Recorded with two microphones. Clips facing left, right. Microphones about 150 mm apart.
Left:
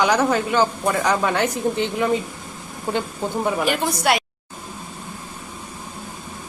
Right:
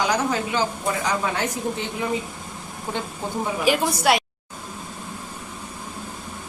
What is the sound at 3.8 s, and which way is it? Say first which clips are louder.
Speech: even; centre (ahead or behind).